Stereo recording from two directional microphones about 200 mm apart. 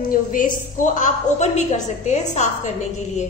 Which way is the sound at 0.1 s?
40° left (ahead or behind).